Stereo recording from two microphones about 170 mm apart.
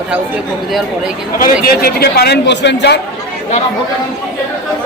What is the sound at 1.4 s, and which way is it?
A man's voice, 60° left (ahead or behind).